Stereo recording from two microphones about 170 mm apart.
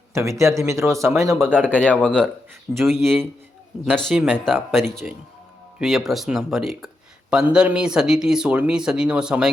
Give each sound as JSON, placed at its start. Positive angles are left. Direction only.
{"t": 0.1, "sound": "speech", "side_deg": -15}
{"t": 1.7, "sound": "speech", "side_deg": 10}
{"t": 3.8, "sound": "speech", "side_deg": 5}